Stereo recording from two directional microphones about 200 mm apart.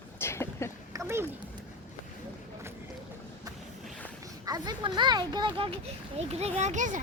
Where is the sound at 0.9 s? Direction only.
15° right (ahead or behind).